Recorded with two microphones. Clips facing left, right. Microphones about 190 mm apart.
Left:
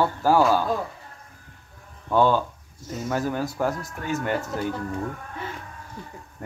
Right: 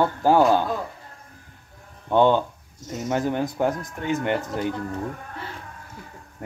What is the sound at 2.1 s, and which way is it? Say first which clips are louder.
Speech: right 2 dB; 20° right (ahead or behind).